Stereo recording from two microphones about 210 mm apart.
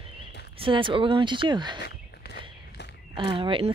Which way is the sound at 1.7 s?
50° left (ahead or behind).